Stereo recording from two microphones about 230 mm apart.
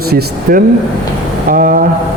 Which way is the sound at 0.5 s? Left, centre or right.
Right.